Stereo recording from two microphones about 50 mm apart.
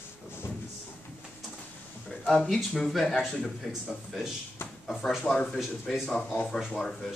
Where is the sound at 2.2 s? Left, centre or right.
Centre.